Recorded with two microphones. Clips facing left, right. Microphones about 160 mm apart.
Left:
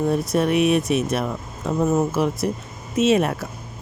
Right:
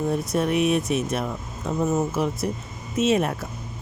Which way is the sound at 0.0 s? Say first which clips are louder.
Left 3 dB; 75° left (ahead or behind).